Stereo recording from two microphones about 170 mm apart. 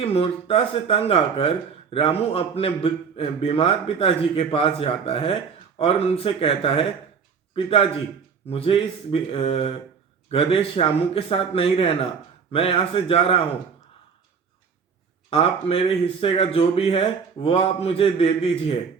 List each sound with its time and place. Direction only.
0.0 s speech: 35° left (ahead or behind)
15.3 s speech: 35° left (ahead or behind)